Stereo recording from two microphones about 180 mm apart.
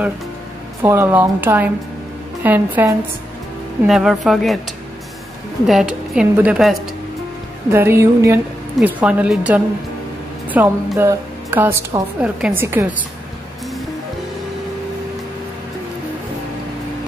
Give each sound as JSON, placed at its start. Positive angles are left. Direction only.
{"t": 0.8, "sound": "a woman's voice", "side_deg": -10}
{"t": 5.7, "sound": "a woman's voice", "side_deg": -5}
{"t": 7.7, "sound": "a woman's voice", "side_deg": -15}